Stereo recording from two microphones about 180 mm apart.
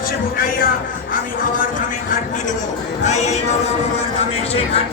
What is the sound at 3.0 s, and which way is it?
Speech, 40° left (ahead or behind).